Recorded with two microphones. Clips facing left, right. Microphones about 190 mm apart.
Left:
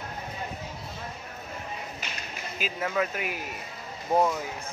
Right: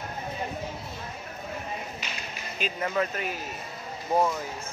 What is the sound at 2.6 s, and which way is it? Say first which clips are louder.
Speech: right 1 dB; 5° left (ahead or behind).